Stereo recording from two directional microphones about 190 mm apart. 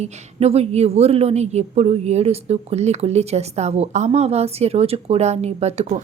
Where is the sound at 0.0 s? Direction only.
30° right (ahead or behind).